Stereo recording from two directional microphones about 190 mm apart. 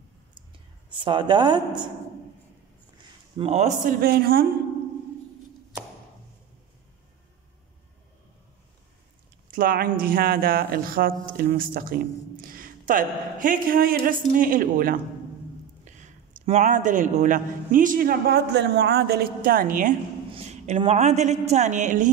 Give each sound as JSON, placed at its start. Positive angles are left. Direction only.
{"t": 1.0, "sound": "a woman's voice", "side_deg": -25}
{"t": 3.3, "sound": "a woman's voice", "side_deg": -35}
{"t": 4.0, "sound": "speech", "side_deg": -50}
{"t": 9.5, "sound": "a woman's voice", "side_deg": -50}